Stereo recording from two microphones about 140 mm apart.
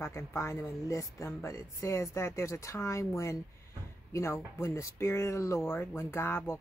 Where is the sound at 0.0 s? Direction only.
20° left (ahead or behind).